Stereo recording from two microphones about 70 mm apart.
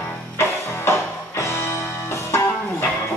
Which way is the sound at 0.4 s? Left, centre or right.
Left.